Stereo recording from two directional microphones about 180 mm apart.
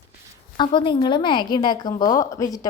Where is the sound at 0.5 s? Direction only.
25° left (ahead or behind).